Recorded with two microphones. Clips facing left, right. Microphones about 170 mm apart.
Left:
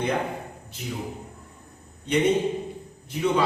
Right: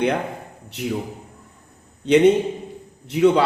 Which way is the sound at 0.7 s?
75° right (ahead or behind).